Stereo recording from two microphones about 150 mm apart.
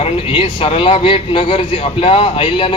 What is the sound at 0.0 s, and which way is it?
A man's voice, 40° left (ahead or behind).